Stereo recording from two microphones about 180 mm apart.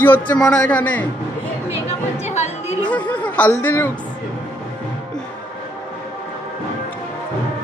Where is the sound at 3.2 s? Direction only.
10° left (ahead or behind).